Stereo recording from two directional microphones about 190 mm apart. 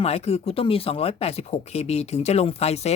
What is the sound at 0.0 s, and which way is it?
Speech, 35° left (ahead or behind).